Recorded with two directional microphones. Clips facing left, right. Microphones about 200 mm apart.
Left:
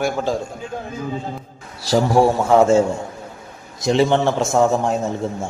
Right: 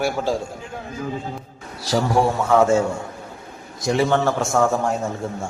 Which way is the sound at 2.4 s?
30° left (ahead or behind).